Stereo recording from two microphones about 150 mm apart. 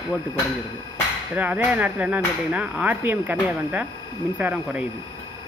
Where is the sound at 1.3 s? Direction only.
10° right (ahead or behind).